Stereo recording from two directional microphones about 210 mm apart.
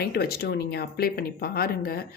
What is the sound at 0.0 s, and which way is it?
Speech, 50° left (ahead or behind).